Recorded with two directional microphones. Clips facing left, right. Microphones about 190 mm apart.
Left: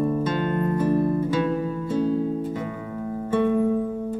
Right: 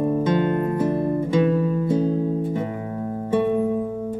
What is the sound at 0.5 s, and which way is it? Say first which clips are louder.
Music: even; 10° right (ahead or behind).